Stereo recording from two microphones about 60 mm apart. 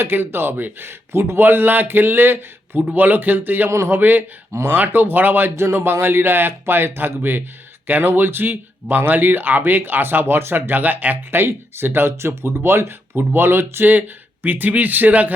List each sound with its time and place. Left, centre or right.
0.0 s speech: right
3.7 s a man's voice: right